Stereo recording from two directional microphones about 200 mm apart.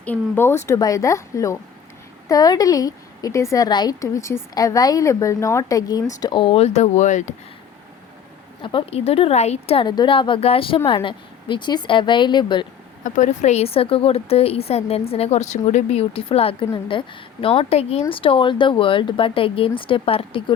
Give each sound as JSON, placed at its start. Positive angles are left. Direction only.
{"t": 0.0, "sound": "a woman's voice", "side_deg": 10}
{"t": 8.6, "sound": "speech", "side_deg": 30}
{"t": 13.1, "sound": "speech", "side_deg": 40}